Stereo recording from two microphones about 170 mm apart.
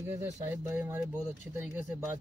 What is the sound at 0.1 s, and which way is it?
Speech, 15° right (ahead or behind).